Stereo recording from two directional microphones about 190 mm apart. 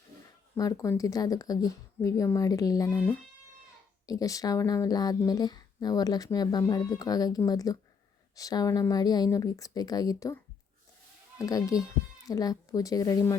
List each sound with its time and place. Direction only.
0.5 s speech: 20° left (ahead or behind)